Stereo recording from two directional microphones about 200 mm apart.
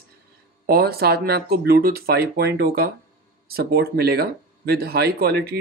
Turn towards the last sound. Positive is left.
turn(degrees=-50)  # may be behind; listen again after turning